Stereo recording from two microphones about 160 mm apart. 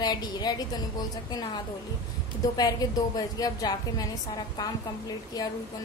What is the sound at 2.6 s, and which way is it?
A woman's voice, 25° left (ahead or behind).